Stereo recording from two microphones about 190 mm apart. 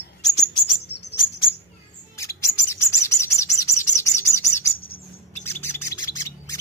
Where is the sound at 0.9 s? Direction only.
60° left (ahead or behind).